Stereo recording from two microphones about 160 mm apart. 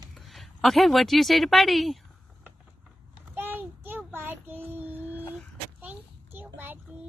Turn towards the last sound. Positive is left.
turn(degrees=-10)  # may be behind; listen again after turning